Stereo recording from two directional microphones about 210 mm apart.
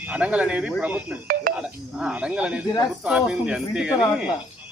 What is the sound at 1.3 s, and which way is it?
Speech, 45° right (ahead or behind).